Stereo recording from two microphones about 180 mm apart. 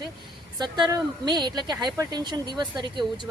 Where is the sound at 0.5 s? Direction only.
25° right (ahead or behind).